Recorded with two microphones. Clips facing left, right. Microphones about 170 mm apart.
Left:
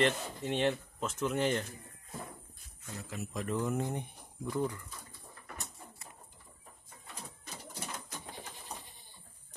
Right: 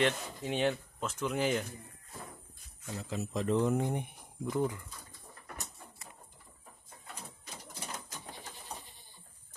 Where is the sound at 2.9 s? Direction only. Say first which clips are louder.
Right 4 dB; 25° right (ahead or behind).